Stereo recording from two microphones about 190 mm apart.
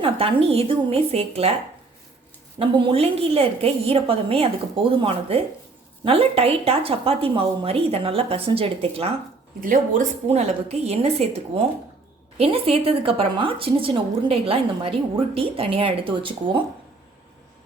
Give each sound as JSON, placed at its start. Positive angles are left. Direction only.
{"t": 0.0, "sound": "a woman's voice", "side_deg": -30}
{"t": 2.6, "sound": "a woman's voice", "side_deg": -30}
{"t": 10.2, "sound": "a woman's voice", "side_deg": -35}